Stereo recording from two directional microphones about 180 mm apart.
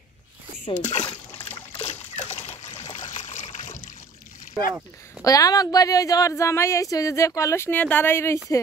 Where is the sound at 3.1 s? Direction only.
40° left (ahead or behind).